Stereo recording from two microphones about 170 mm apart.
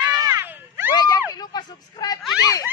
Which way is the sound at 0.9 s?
25° left (ahead or behind).